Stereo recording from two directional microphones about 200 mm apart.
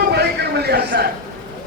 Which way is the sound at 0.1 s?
55° right (ahead or behind).